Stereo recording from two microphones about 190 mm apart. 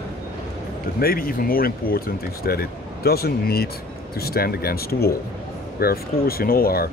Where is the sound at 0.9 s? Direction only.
50° left (ahead or behind).